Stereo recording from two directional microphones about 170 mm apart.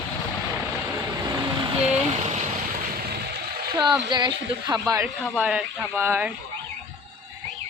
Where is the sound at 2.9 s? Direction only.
60° right (ahead or behind).